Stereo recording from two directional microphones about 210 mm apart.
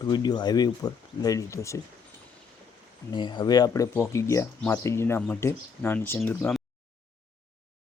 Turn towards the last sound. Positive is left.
turn(degrees=5)  # may be behind; listen again after turning